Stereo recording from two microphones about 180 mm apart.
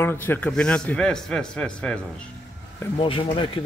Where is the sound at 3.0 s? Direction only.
30° left (ahead or behind).